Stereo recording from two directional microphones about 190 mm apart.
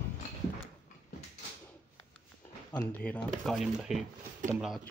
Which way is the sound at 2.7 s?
10° left (ahead or behind).